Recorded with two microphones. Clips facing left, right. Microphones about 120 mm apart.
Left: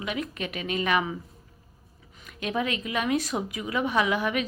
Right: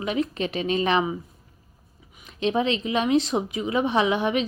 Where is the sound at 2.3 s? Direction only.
25° right (ahead or behind).